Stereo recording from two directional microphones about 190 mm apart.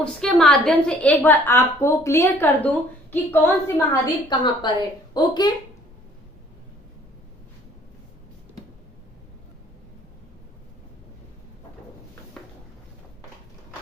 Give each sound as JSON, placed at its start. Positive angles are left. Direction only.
{"t": 0.0, "sound": "a woman's voice", "side_deg": 5}